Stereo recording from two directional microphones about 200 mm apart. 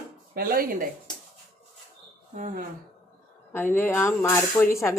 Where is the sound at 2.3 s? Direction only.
40° right (ahead or behind).